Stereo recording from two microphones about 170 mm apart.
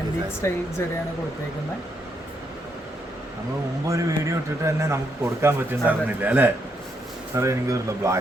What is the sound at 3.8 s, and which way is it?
A man's voice, 20° right (ahead or behind).